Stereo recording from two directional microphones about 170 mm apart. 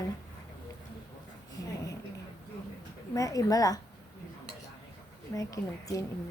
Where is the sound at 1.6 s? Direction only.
20° left (ahead or behind).